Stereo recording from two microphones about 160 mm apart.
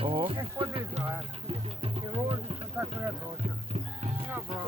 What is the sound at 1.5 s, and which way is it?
Music, 35° right (ahead or behind).